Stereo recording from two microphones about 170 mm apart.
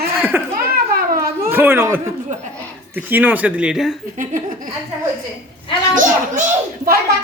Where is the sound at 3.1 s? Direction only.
10° right (ahead or behind).